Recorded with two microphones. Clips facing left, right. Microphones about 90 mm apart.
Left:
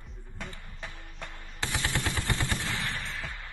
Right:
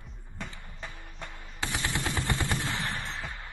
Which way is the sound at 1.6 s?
20° right (ahead or behind).